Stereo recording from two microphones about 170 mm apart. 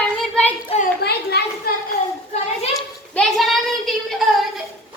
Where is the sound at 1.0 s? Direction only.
75° left (ahead or behind).